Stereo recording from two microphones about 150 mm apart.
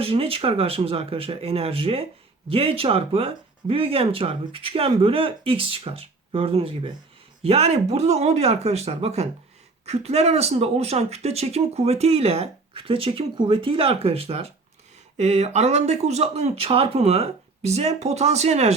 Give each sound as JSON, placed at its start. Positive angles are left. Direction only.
{"t": 0.0, "sound": "speech", "side_deg": -40}